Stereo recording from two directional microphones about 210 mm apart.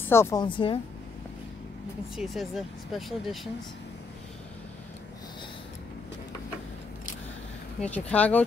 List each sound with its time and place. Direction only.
0.0 s speech: 10° left (ahead or behind)
2.1 s speech: centre (ahead or behind)
7.8 s speech: 5° left (ahead or behind)